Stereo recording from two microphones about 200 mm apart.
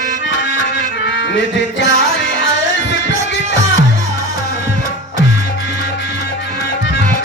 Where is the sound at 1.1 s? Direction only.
65° left (ahead or behind).